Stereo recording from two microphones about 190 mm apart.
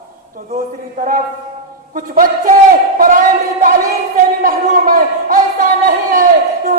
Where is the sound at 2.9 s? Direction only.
45° right (ahead or behind).